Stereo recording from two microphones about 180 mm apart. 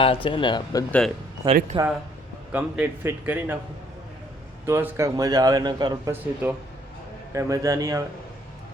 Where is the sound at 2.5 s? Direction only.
10° right (ahead or behind).